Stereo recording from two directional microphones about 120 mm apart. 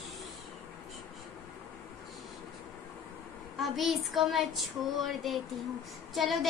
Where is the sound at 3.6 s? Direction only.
Centre (ahead or behind).